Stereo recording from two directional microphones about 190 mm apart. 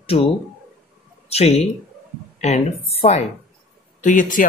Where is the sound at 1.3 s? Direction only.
35° left (ahead or behind).